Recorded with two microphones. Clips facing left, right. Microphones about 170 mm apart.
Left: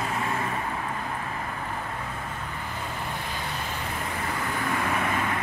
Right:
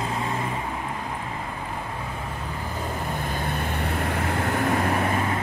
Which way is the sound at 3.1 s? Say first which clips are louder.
Right 5 dB; 50° right (ahead or behind).